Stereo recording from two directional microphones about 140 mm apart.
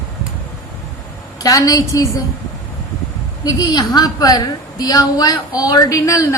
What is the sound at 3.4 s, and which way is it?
A woman's voice, 25° left (ahead or behind).